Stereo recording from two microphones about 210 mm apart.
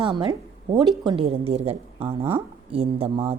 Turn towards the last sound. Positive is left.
turn(degrees=-30)  # may be behind; listen again after turning